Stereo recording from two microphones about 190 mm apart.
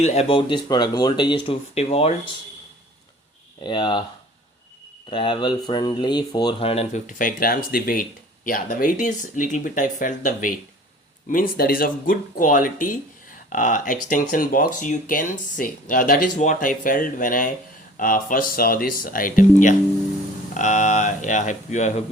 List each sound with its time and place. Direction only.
0.0 s speech: 35° left (ahead or behind)
3.6 s speech: 25° left (ahead or behind)
5.1 s speech: 25° left (ahead or behind)